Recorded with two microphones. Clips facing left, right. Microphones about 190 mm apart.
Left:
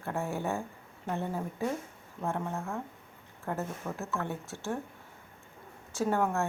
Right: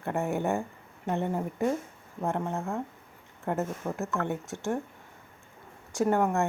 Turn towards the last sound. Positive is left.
turn(degrees=-15)  # may be behind; listen again after turning